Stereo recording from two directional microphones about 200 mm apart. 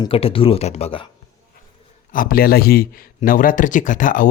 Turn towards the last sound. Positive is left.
turn(degrees=40)  # may be behind; listen again after turning